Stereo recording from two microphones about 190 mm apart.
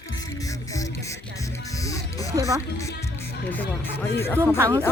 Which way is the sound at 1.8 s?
15° left (ahead or behind).